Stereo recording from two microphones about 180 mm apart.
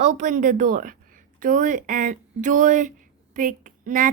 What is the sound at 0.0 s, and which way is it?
A woman's voice, 40° right (ahead or behind).